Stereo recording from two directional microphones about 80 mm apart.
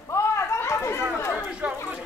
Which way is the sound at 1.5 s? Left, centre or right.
Centre.